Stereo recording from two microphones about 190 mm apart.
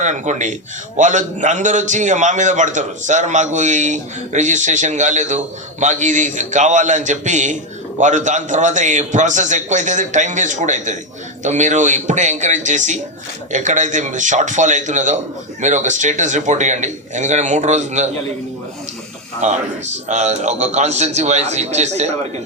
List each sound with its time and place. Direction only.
0.0 s a man's voice: 40° right (ahead or behind)
19.4 s a man's voice: 40° right (ahead or behind)